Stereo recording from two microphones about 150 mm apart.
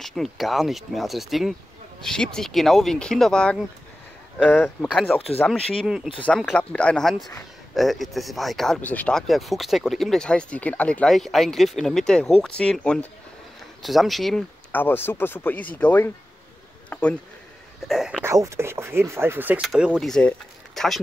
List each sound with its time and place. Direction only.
0.0 s speech: centre (ahead or behind)
6.2 s speech: 10° left (ahead or behind)
14.7 s speech: 15° left (ahead or behind)
16.9 s a sound: 15° left (ahead or behind)
17.8 s speech: 5° right (ahead or behind)
18.2 s speech: 20° right (ahead or behind)
19.6 s speech: centre (ahead or behind)